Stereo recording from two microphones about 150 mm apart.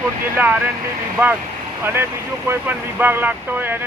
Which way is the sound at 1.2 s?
10° right (ahead or behind).